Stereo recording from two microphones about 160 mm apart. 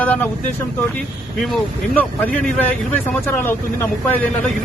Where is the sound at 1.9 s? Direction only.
10° left (ahead or behind).